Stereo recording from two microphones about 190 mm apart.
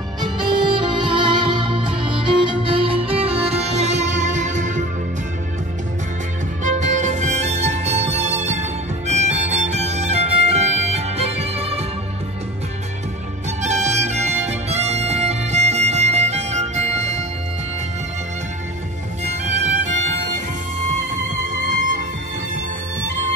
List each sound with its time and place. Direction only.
0.2 s music: 25° right (ahead or behind); by 4.8 s 40° right (ahead or behind)
6.6 s music: 40° right (ahead or behind)
13.6 s music: 40° right (ahead or behind)
19.2 s music: 35° right (ahead or behind)